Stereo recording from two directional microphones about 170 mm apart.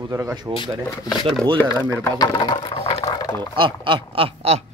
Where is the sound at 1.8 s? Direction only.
10° left (ahead or behind).